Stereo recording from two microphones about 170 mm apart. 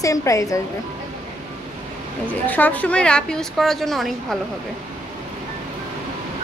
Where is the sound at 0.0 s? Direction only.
20° left (ahead or behind).